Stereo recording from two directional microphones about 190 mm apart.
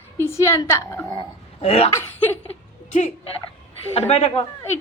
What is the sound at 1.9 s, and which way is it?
Speech, 15° left (ahead or behind).